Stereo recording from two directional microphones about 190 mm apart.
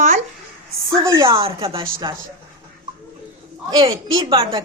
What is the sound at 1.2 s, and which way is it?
Speech, 25° right (ahead or behind).